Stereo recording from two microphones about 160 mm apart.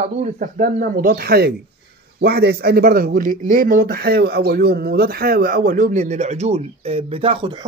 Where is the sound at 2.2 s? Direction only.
90° right.